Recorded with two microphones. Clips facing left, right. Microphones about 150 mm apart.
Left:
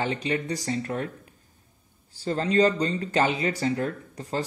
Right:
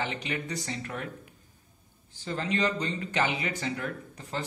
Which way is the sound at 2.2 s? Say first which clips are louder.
Left 8 dB; 40° left (ahead or behind).